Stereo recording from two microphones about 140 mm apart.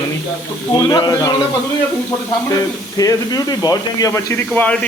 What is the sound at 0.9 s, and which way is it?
Speech, 30° left (ahead or behind).